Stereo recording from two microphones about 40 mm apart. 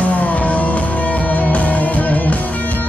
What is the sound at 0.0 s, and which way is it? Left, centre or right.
Music, left.